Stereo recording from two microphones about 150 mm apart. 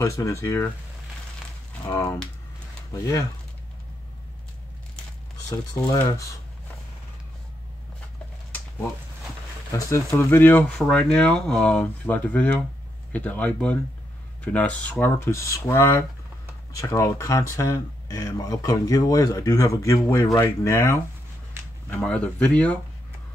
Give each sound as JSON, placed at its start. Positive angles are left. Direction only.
{"t": 0.0, "sound": "speech", "side_deg": 20}
{"t": 2.9, "sound": "speech", "side_deg": 25}
{"t": 9.7, "sound": "speech", "side_deg": 20}
{"t": 21.9, "sound": "speech", "side_deg": 10}